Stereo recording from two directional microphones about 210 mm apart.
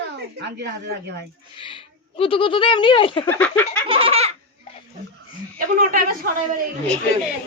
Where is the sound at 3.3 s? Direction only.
5° left (ahead or behind).